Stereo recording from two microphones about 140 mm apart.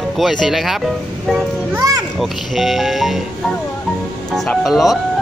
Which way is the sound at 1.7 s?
25° right (ahead or behind).